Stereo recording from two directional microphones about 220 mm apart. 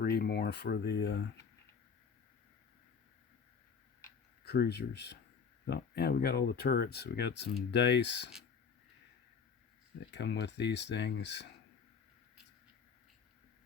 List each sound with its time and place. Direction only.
0.0 s speech: 45° left (ahead or behind)
4.4 s speech: 45° left (ahead or behind)
10.1 s speech: 50° left (ahead or behind)